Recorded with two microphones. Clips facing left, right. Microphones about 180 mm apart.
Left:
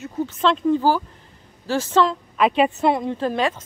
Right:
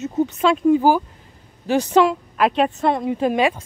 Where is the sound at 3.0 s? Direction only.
15° right (ahead or behind).